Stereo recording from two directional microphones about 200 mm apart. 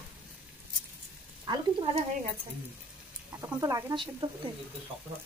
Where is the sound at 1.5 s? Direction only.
20° right (ahead or behind).